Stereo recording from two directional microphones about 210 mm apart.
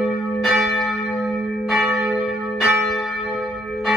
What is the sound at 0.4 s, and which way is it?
Church bell, centre (ahead or behind).